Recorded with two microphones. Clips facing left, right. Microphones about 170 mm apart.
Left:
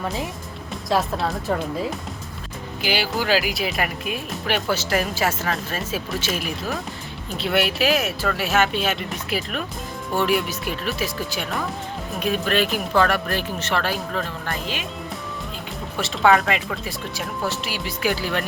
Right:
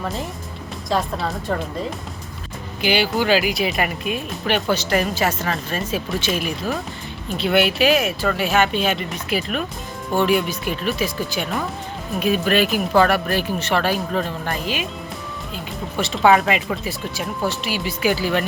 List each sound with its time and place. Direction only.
0.0 s speech: centre (ahead or behind)
13.7 s speech: 20° right (ahead or behind)
16.0 s speech: centre (ahead or behind)